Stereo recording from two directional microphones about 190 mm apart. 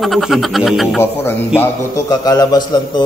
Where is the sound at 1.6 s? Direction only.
15° left (ahead or behind).